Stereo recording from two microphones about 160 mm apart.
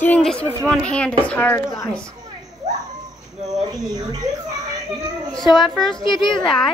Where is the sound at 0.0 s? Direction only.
5° left (ahead or behind).